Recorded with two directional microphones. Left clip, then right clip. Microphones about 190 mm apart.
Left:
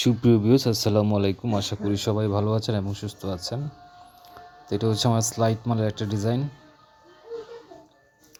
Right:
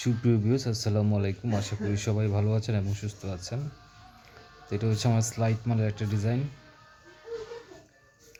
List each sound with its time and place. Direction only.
0.0 s speech: 25° left (ahead or behind)
4.7 s speech: 20° left (ahead or behind)